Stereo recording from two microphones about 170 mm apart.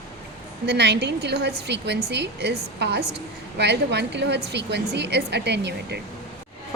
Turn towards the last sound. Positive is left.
turn(degrees=-85)